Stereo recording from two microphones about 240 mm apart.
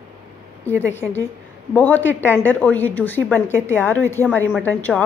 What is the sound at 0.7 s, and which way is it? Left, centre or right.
A woman's voice, centre.